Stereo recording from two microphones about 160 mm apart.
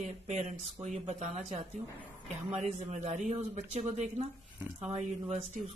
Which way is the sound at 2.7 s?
45° right (ahead or behind).